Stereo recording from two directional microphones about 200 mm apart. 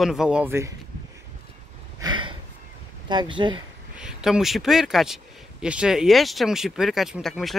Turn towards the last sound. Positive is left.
turn(degrees=0)  # may be behind; listen again after turning